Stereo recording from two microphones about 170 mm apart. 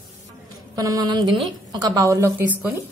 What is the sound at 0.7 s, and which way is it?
A woman's voice, 20° right (ahead or behind).